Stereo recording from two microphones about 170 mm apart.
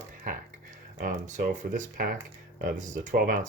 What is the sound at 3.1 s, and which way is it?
Speech, 60° right (ahead or behind).